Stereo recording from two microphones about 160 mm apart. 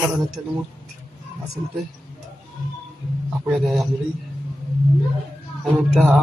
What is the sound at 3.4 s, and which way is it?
Speech, centre (ahead or behind).